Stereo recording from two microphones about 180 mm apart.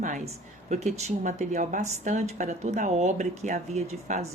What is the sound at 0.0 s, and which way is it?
Speech, 40° right (ahead or behind).